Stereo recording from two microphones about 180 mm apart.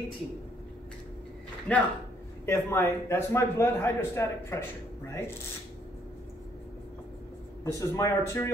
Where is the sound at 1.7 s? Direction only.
5° left (ahead or behind).